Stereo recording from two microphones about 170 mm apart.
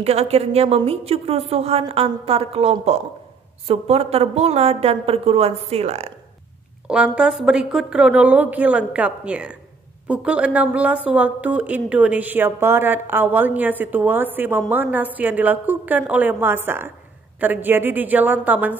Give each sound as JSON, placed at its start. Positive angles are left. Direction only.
{"t": 0.0, "sound": "a woman's voice", "side_deg": -35}
{"t": 6.9, "sound": "speech", "side_deg": -5}